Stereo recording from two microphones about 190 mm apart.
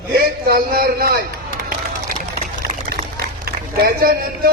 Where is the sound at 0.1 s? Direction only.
60° right (ahead or behind).